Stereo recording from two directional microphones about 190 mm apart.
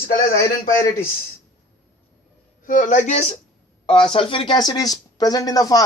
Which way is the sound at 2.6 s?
45° left (ahead or behind).